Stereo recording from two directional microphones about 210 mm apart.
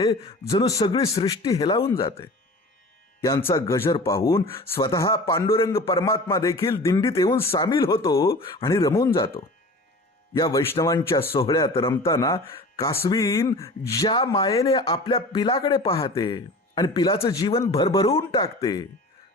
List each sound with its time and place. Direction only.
0.0 s speech: 15° left (ahead or behind)
3.2 s speech: 15° left (ahead or behind)